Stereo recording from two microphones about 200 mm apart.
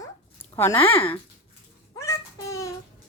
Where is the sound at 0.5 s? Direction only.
10° left (ahead or behind).